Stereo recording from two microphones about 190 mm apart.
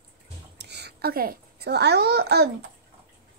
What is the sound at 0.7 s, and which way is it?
A child's voice, 55° right (ahead or behind).